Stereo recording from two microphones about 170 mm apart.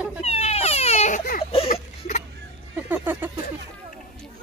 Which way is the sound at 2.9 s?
10° right (ahead or behind).